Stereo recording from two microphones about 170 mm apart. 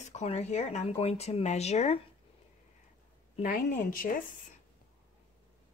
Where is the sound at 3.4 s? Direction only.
50° left (ahead or behind).